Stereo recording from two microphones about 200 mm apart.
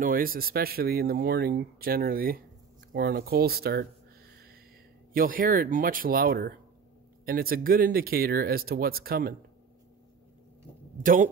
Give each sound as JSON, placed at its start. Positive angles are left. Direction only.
{"t": 0.0, "sound": "speech", "side_deg": -45}
{"t": 5.1, "sound": "speech", "side_deg": -45}
{"t": 11.0, "sound": "speech", "side_deg": -40}